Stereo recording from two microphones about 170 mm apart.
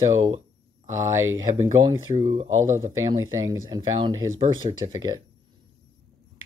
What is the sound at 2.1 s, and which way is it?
Speech, 40° right (ahead or behind).